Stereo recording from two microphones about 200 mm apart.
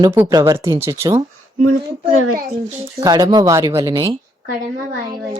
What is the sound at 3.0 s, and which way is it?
Speech, 20° right (ahead or behind).